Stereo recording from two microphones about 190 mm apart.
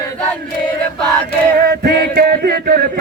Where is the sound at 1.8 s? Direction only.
55° right (ahead or behind).